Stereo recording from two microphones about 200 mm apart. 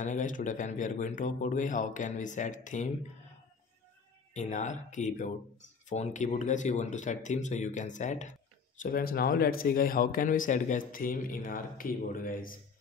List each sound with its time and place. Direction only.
0.0 s speech: 40° left (ahead or behind)
4.3 s speech: 35° left (ahead or behind)